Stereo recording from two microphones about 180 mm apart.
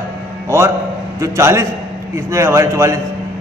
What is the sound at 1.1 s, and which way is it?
A man's voice, 15° right (ahead or behind).